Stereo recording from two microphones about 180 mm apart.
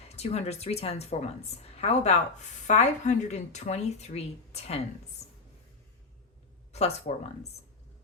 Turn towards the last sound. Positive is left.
turn(degrees=35)  # may be behind; listen again after turning